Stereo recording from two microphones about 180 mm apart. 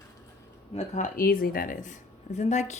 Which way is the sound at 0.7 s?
40° left (ahead or behind).